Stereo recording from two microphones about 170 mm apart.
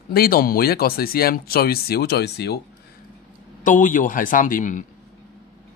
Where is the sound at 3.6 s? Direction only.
50° left (ahead or behind).